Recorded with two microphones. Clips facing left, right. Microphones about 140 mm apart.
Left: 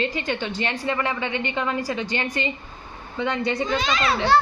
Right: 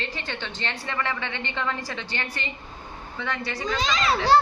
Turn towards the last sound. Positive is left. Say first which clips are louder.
# left 1 dB
turn(degrees=-35)  # may be behind; listen again after turning